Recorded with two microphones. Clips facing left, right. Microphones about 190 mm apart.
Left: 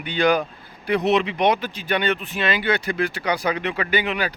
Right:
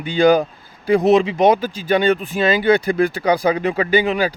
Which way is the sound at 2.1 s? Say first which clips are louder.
Right 7 dB; 40° right (ahead or behind).